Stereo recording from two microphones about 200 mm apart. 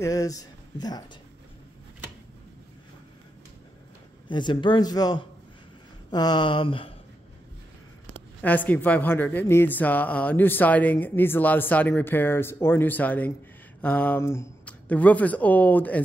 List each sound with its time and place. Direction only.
0.0 s speech: 15° left (ahead or behind)
4.3 s speech: 25° left (ahead or behind)
8.4 s speech: 10° left (ahead or behind)